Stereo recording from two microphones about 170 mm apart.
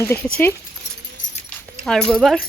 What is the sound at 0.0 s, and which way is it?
Speech, 15° left (ahead or behind).